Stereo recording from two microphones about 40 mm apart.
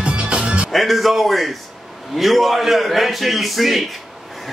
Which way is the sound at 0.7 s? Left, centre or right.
Centre.